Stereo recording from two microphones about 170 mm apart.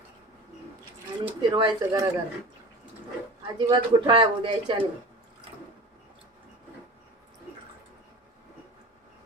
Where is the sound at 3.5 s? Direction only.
30° right (ahead or behind).